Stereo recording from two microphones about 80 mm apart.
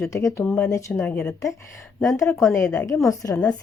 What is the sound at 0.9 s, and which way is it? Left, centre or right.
Speech, centre.